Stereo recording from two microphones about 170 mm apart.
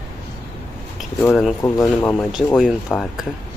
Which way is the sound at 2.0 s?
5° left (ahead or behind).